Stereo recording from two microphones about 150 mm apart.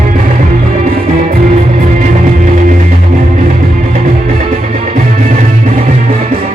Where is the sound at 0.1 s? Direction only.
60° right (ahead or behind).